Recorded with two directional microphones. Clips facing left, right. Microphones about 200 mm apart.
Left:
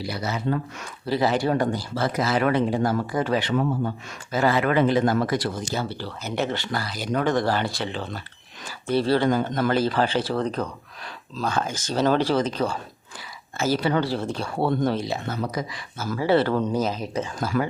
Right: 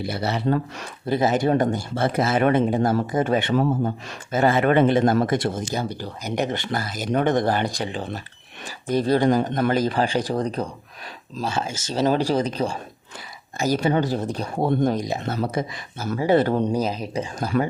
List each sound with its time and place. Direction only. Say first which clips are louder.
0.3 s speech: right 4 dB; 35° right (ahead or behind)
1.0 s speech: right 2 dB; 20° right (ahead or behind)
8.9 s speech: right 2 dB; 15° right (ahead or behind)
12.3 s speech: right 1 dB; 35° right (ahead or behind)
13.7 s speech: right 3 dB; 25° right (ahead or behind)
17.4 s speech: right 2 dB; 30° right (ahead or behind)